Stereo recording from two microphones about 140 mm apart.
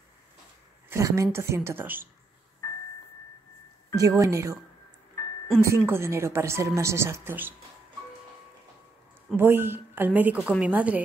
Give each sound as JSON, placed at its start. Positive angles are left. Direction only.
{"t": 0.8, "sound": "a woman's voice", "side_deg": -20}
{"t": 3.9, "sound": "a woman's voice", "side_deg": -25}
{"t": 5.6, "sound": "a woman's voice", "side_deg": -20}
{"t": 9.4, "sound": "a woman's voice", "side_deg": -15}